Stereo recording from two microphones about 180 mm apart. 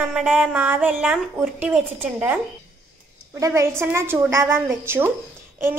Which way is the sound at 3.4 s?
15° right (ahead or behind).